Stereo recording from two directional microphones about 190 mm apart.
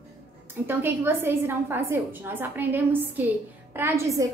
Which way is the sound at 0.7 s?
10° right (ahead or behind).